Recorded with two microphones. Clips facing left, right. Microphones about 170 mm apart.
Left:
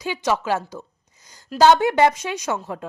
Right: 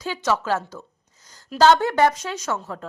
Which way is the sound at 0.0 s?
15° left (ahead or behind).